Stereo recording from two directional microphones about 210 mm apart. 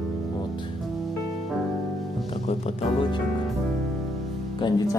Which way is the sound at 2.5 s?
30° left (ahead or behind).